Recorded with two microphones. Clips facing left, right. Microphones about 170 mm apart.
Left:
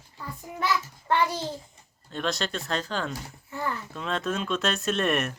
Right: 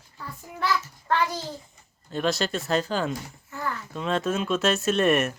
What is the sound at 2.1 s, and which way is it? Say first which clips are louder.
Speech: right 4 dB; 5° right (ahead or behind).